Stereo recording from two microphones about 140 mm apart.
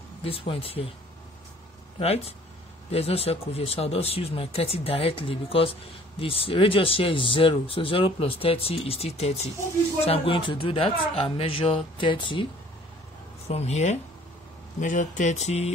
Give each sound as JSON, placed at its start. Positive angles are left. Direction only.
{"t": 0.2, "sound": "speech", "side_deg": 40}
{"t": 2.0, "sound": "speech", "side_deg": 45}
{"t": 13.5, "sound": "speech", "side_deg": 50}